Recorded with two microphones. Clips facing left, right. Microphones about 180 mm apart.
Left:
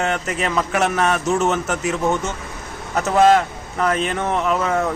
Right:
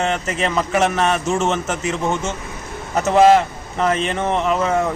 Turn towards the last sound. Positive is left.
turn(degrees=0)  # may be behind; listen again after turning